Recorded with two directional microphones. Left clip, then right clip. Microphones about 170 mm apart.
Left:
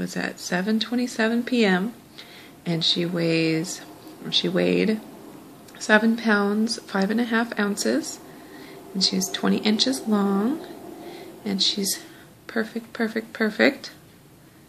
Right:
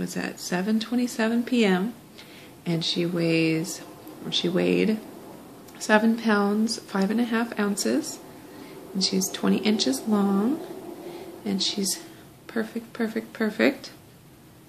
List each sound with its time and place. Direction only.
0.0 s speech: 15° left (ahead or behind)